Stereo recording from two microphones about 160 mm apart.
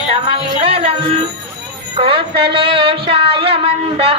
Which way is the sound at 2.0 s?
35° right (ahead or behind).